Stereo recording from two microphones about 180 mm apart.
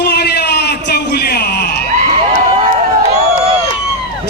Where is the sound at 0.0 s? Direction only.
65° left (ahead or behind).